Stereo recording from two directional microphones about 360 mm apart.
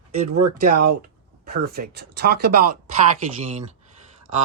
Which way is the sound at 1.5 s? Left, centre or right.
Right.